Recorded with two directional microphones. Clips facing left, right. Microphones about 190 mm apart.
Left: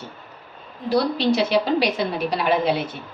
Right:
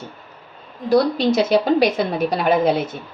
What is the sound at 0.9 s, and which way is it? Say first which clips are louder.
A woman's voice: right 3 dB; 45° right (ahead or behind).